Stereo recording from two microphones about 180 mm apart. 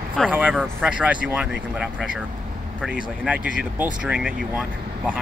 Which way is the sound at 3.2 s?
5° right (ahead or behind).